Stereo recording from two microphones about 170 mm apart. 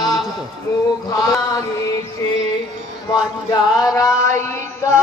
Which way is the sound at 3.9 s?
20° left (ahead or behind).